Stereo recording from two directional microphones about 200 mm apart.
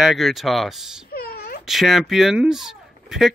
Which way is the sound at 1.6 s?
Centre (ahead or behind).